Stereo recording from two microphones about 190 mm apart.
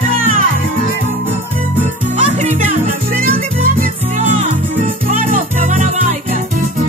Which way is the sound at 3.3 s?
45° right (ahead or behind).